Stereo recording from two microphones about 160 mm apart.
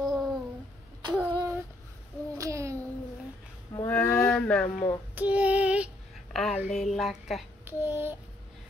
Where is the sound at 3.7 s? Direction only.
10° left (ahead or behind).